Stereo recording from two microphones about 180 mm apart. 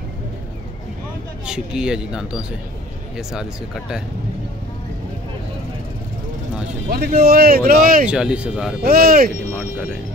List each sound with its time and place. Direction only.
1.4 s speech: 5° right (ahead or behind)
6.9 s speech: 60° right (ahead or behind)
8.1 s speech: 5° right (ahead or behind)
8.8 s speech: 55° right (ahead or behind)